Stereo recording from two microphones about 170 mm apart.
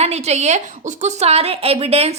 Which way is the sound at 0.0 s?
40° right (ahead or behind).